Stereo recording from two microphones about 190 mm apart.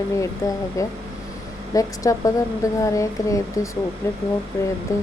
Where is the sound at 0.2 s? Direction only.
15° left (ahead or behind).